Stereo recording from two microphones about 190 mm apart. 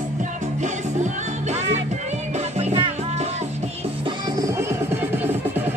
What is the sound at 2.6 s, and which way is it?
Music, 35° right (ahead or behind).